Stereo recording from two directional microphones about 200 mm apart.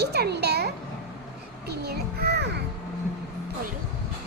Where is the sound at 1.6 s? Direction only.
55° right (ahead or behind).